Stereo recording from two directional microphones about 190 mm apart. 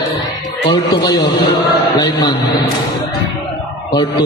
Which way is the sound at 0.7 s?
20° left (ahead or behind).